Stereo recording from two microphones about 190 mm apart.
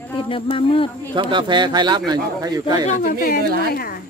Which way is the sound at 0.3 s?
30° left (ahead or behind).